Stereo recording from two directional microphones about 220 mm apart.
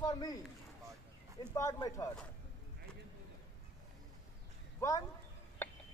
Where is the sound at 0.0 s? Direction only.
20° left (ahead or behind).